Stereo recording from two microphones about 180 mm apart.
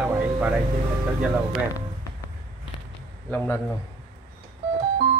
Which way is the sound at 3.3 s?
15° left (ahead or behind).